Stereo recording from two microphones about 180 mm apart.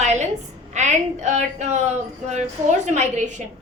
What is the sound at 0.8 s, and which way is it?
A woman's voice, 40° right (ahead or behind).